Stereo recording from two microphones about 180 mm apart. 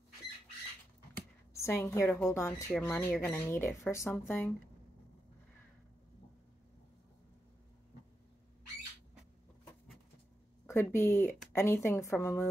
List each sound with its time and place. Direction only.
1.6 s a woman's voice: 15° left (ahead or behind)
10.7 s a woman's voice: 15° left (ahead or behind)